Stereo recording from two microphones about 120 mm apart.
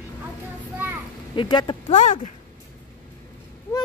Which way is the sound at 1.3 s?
40° left (ahead or behind).